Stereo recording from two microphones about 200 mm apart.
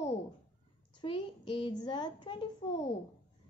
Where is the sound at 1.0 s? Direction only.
25° left (ahead or behind).